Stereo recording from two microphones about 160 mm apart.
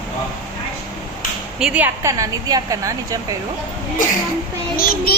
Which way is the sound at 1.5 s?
5° right (ahead or behind).